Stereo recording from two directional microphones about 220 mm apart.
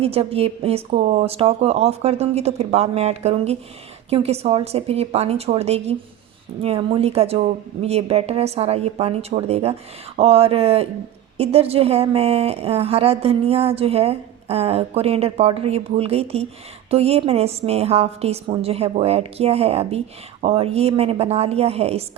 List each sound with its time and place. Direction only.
0.0 s a woman's voice: 25° right (ahead or behind)